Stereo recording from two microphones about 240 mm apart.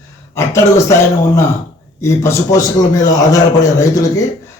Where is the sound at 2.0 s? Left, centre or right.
Centre.